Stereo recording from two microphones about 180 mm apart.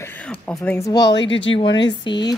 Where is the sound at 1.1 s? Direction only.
90° left.